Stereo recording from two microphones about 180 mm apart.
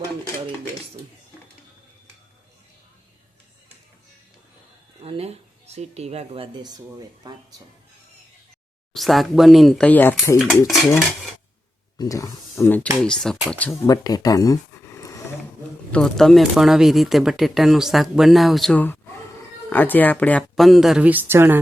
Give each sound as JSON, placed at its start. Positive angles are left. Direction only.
{"t": 5.0, "sound": "speech", "side_deg": -35}
{"t": 8.9, "sound": "speech", "side_deg": 0}
{"t": 11.9, "sound": "speech", "side_deg": 20}
{"t": 15.9, "sound": "speech", "side_deg": 5}